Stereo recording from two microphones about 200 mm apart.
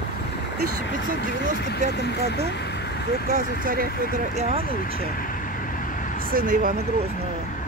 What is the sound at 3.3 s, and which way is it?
Speech, 45° right (ahead or behind).